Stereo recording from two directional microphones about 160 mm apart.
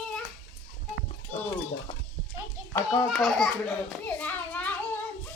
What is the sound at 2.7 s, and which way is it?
Speech, 25° left (ahead or behind).